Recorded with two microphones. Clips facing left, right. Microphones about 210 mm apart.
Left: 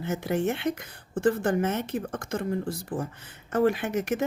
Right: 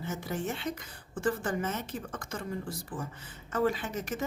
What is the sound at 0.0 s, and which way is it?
Speech, 65° left (ahead or behind).